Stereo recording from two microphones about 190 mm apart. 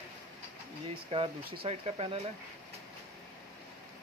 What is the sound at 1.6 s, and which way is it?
Speech, 30° right (ahead or behind).